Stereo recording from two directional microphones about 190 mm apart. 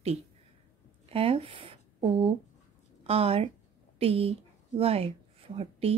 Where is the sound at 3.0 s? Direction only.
30° right (ahead or behind).